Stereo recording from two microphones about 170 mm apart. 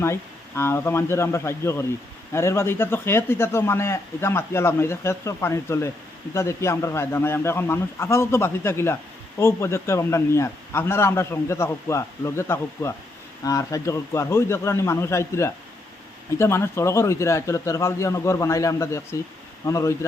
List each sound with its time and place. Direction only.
0.0 s speech: 15° left (ahead or behind)